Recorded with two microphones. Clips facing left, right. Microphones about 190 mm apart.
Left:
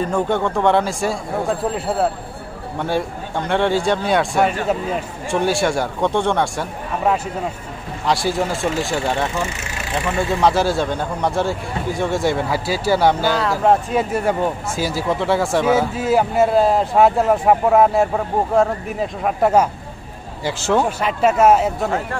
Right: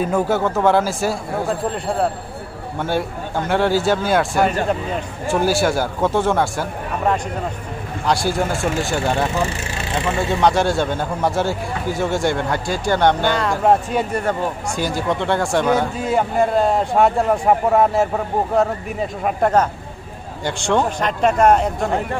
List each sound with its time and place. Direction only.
0.0 s a man's voice: 5° right (ahead or behind)